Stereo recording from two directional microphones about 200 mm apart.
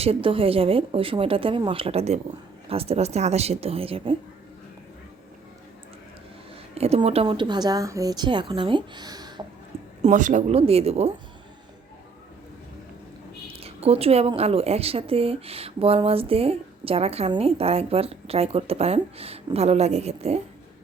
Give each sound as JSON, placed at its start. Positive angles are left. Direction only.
{"t": 0.0, "sound": "a woman's voice", "side_deg": -30}
{"t": 6.7, "sound": "a woman's voice", "side_deg": -30}
{"t": 10.0, "sound": "speech", "side_deg": -40}
{"t": 13.5, "sound": "a woman's voice", "side_deg": -30}